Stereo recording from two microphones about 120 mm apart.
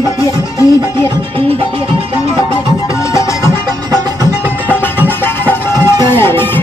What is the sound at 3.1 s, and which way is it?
Music, 25° left (ahead or behind).